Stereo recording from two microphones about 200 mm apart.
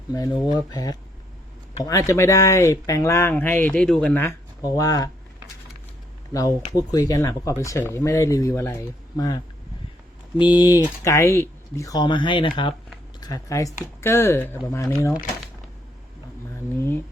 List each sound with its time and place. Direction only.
0.1 s speech: 20° left (ahead or behind)
6.3 s speech: 20° left (ahead or behind)